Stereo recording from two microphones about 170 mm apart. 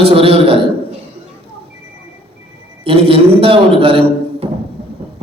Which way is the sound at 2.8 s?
35° right (ahead or behind).